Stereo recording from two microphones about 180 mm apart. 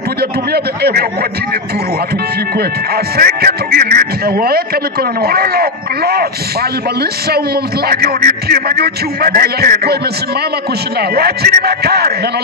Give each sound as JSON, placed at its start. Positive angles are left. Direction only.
{"t": 0.5, "sound": "speech", "side_deg": -60}
{"t": 3.2, "sound": "speech", "side_deg": -55}
{"t": 11.0, "sound": "speech", "side_deg": -60}